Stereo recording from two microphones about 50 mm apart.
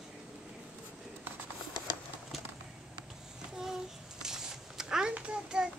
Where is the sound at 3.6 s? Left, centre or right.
Centre.